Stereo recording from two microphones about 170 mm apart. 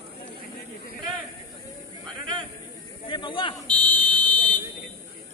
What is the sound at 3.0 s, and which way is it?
Snake, 30° left (ahead or behind).